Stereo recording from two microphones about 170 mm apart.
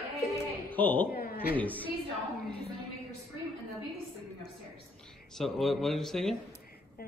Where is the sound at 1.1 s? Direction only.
60° left (ahead or behind).